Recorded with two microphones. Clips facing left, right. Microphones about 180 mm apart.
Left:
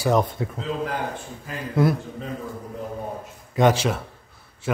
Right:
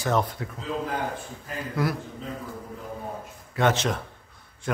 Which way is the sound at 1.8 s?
25° left (ahead or behind).